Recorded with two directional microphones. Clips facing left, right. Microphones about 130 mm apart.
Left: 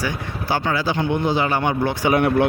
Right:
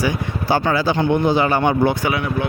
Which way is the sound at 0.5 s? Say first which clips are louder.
Right 3 dB; 35° right (ahead or behind).